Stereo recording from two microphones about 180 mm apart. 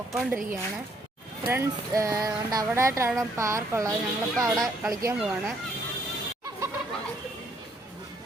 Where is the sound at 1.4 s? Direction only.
15° right (ahead or behind).